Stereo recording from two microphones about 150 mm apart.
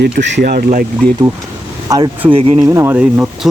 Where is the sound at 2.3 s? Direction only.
40° right (ahead or behind).